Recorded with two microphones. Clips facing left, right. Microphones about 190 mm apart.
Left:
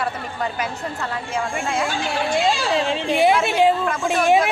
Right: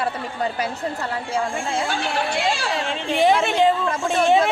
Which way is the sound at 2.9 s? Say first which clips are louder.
Right 1 dB; 15° left (ahead or behind).